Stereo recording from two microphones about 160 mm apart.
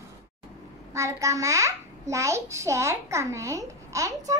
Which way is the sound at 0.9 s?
20° right (ahead or behind).